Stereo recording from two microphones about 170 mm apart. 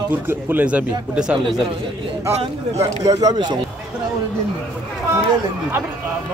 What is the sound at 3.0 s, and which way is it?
Speech, 25° right (ahead or behind).